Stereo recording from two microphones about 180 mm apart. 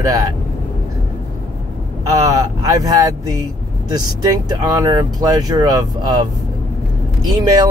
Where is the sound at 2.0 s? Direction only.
20° right (ahead or behind).